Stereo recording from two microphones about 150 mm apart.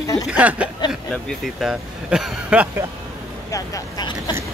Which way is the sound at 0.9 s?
Centre (ahead or behind).